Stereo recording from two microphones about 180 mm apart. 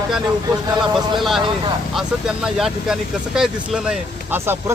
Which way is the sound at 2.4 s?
5° right (ahead or behind).